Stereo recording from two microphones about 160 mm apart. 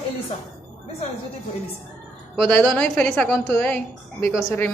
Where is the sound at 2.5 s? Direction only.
5° left (ahead or behind).